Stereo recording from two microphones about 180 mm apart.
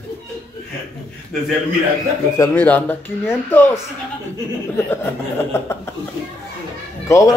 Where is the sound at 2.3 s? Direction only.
15° left (ahead or behind).